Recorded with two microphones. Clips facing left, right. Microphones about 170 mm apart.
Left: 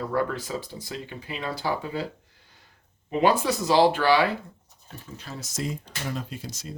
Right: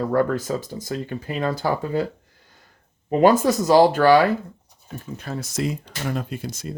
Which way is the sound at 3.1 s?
45° right (ahead or behind).